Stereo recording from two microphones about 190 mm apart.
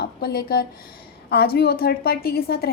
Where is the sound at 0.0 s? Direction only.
55° left (ahead or behind).